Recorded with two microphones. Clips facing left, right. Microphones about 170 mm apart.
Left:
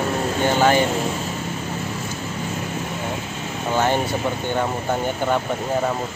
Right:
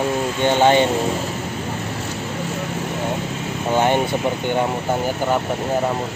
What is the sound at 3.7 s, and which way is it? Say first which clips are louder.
Speech: right 3 dB; 20° right (ahead or behind).